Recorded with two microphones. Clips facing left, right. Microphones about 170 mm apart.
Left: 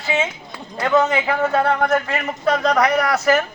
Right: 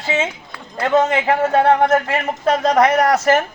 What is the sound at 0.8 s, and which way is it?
A man's voice, 45° right (ahead or behind).